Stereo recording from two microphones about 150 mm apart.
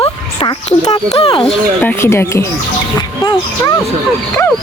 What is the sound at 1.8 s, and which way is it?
Speech, 15° left (ahead or behind).